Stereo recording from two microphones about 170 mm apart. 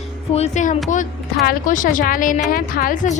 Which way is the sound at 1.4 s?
55° left (ahead or behind).